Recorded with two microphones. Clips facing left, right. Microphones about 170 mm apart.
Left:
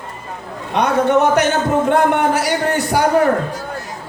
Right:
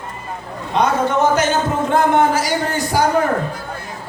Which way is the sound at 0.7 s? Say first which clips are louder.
Left 2 dB; 65° left (ahead or behind).